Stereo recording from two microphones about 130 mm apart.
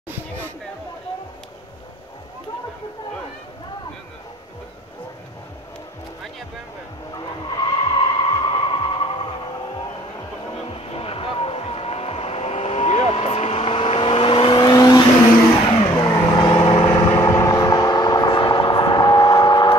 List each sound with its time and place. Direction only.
7.2 s skidding: 35° left (ahead or behind)
10.7 s vehicle: 45° left (ahead or behind)